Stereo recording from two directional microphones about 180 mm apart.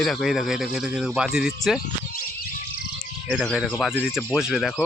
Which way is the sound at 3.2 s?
Centre (ahead or behind).